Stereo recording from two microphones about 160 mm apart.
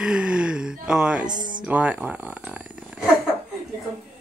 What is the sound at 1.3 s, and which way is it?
Speech, 55° right (ahead or behind).